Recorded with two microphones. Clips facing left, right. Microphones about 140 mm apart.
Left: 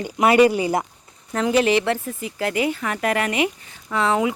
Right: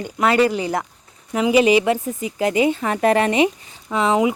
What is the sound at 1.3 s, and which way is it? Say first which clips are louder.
Speech: right 3 dB; 10° right (ahead or behind).